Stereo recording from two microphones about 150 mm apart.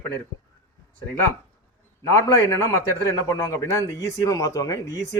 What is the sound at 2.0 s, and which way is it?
A man's voice, 20° left (ahead or behind).